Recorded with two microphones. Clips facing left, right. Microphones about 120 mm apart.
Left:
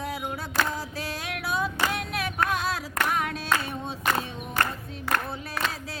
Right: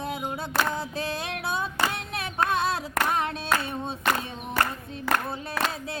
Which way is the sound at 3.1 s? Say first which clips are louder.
Even; 30° right (ahead or behind).